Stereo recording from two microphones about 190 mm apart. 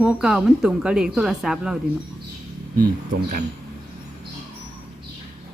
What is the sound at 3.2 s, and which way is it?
Speech, 45° right (ahead or behind).